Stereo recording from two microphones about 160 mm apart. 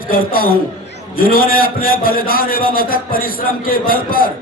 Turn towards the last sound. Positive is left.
turn(degrees=65)  # may be behind; listen again after turning